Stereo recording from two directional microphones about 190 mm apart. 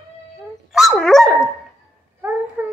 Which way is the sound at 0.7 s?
Centre (ahead or behind).